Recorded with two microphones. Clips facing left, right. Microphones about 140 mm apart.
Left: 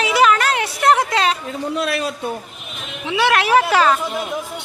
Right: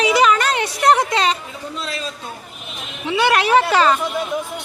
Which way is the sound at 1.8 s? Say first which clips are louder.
Left 6 dB; 65° left (ahead or behind).